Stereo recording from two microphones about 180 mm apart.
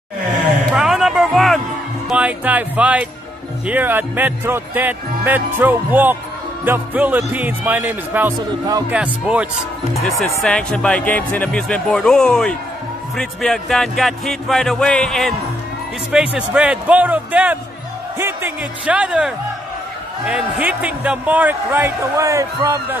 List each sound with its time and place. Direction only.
0.7 s music: centre (ahead or behind)
2.0 s speech: 5° right (ahead or behind)
8.9 s speech: 5° right (ahead or behind)